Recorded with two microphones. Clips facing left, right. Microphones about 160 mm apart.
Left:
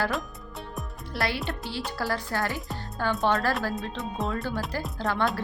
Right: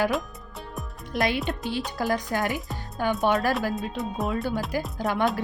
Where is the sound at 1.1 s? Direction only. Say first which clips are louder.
Right 4 dB; 20° right (ahead or behind).